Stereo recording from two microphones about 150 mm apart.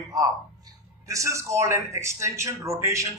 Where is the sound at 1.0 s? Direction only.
20° right (ahead or behind).